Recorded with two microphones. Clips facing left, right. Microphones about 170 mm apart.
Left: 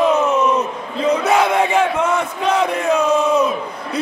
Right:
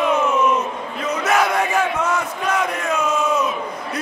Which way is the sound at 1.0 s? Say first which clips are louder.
Left 4 dB; 25° left (ahead or behind).